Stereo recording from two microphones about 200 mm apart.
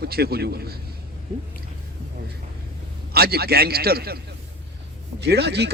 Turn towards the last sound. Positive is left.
turn(degrees=-55)  # may be behind; listen again after turning